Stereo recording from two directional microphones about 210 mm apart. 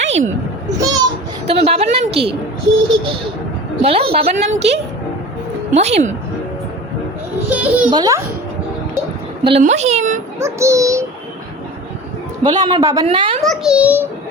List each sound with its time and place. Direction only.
0.0 s a sound: 35° right (ahead or behind)
0.8 s a man's voice: 15° right (ahead or behind)
1.5 s a woman's voice: 30° right (ahead or behind)
3.8 s a woman's voice: 25° right (ahead or behind)
7.5 s a man's voice: 5° right (ahead or behind)
7.9 s a woman's voice: 20° right (ahead or behind)
9.4 s a woman's voice: 30° right (ahead or behind)
10.4 s a man's voice: 15° right (ahead or behind)
12.4 s a man's voice: 20° right (ahead or behind)
13.4 s a child's voice: centre (ahead or behind)